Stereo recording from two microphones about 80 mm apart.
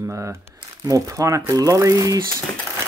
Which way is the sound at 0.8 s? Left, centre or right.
Right.